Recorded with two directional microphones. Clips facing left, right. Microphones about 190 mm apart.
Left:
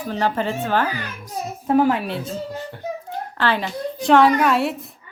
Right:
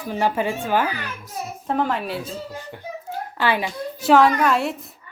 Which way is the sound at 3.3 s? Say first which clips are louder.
Even; 10° right (ahead or behind).